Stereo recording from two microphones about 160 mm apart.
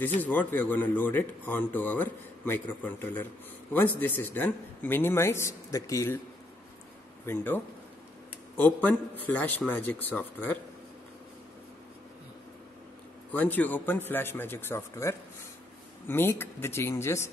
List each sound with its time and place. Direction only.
0.2 s speech: 10° left (ahead or behind)
7.2 s speech: 15° left (ahead or behind)
13.3 s speech: 10° left (ahead or behind)